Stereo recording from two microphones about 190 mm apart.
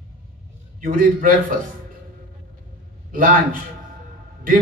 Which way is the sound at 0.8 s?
45° right (ahead or behind).